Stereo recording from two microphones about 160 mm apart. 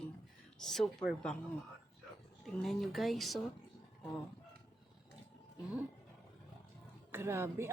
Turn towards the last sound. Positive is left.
turn(degrees=-15)  # may be behind; listen again after turning